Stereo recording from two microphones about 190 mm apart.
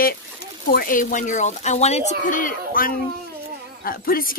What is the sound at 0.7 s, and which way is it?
Speech, 45° left (ahead or behind).